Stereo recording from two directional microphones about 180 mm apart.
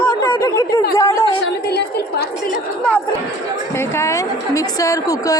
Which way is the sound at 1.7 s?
65° left (ahead or behind).